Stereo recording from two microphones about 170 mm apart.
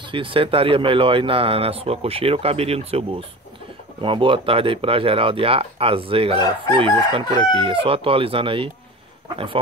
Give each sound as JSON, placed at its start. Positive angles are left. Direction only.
{"t": 0.0, "sound": "speech", "side_deg": -30}